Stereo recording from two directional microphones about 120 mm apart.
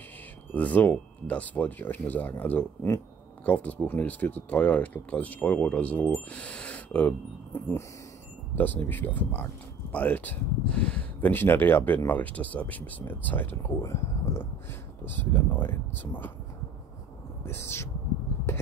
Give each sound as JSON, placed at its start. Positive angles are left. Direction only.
{"t": 0.5, "sound": "speech", "side_deg": 15}
{"t": 17.5, "sound": "speech", "side_deg": 20}